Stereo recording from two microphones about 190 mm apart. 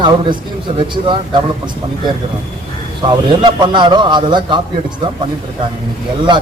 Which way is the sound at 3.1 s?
25° right (ahead or behind).